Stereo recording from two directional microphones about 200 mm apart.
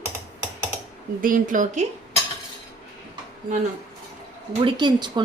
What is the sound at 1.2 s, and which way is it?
Speech, 40° right (ahead or behind).